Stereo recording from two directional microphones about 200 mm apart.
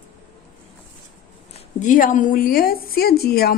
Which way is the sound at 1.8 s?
40° left (ahead or behind).